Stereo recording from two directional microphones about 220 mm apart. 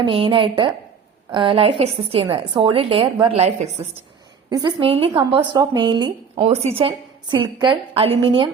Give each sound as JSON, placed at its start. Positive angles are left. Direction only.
{"t": 0.0, "sound": "a woman's voice", "side_deg": -25}